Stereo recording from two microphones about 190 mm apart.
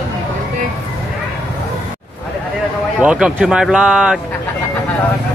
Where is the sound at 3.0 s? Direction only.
5° right (ahead or behind).